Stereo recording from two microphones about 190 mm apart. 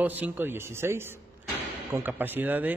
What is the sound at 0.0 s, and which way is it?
Speech, 10° right (ahead or behind).